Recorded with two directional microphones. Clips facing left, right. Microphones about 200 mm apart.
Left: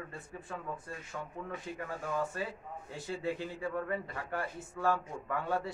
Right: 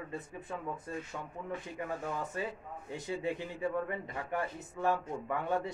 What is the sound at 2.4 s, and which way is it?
A man's voice, 20° right (ahead or behind).